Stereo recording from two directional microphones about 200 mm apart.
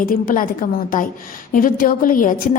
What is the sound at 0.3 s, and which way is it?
A woman's voice, 45° left (ahead or behind).